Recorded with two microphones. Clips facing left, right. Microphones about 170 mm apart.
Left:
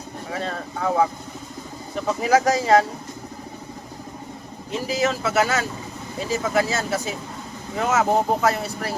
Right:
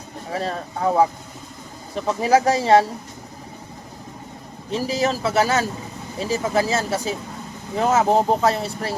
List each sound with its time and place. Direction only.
0.3 s speech: 35° right (ahead or behind)
2.2 s speech: 30° right (ahead or behind)
4.7 s speech: 30° right (ahead or behind)